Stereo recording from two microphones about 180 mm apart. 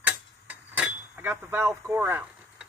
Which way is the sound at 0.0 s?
5° right (ahead or behind).